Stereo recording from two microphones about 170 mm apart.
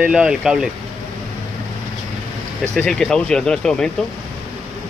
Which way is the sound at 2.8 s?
5° left (ahead or behind).